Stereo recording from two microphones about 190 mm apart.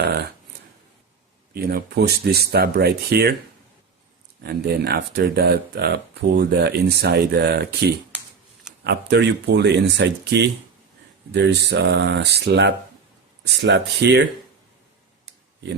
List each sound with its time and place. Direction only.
0.0 s speech: 55° right (ahead or behind)
1.5 s speech: 55° right (ahead or behind)
4.4 s speech: 55° right (ahead or behind)